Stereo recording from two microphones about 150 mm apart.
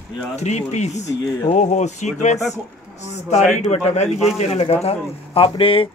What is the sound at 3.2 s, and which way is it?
Speech, 45° left (ahead or behind).